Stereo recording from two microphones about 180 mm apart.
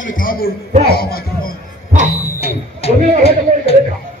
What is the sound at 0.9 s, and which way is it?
Speech, 55° left (ahead or behind).